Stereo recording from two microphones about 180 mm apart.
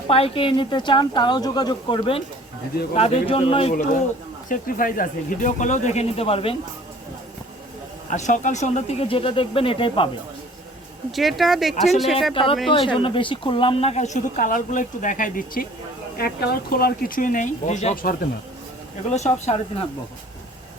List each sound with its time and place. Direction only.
0.1 s a woman's voice: 30° left (ahead or behind)
4.4 s speech: 50° left (ahead or behind); by 6.6 s 30° left (ahead or behind)
8.1 s a woman's voice: 45° left (ahead or behind)
11.1 s speech: centre (ahead or behind)
12.7 s a woman's voice: 25° left (ahead or behind); by 15.6 s 45° left (ahead or behind)
16.1 s a woman's voice: 60° left (ahead or behind); by 19.5 s 40° left (ahead or behind)